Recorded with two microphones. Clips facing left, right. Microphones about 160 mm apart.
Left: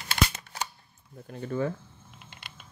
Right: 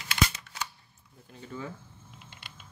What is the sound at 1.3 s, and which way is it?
Speech, 60° left (ahead or behind).